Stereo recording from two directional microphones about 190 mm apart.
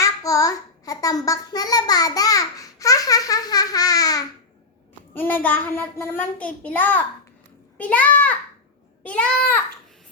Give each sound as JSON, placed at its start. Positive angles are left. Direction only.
{"t": 0.0, "sound": "a child's voice", "side_deg": 15}